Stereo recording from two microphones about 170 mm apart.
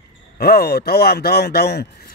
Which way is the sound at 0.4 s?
65° left (ahead or behind).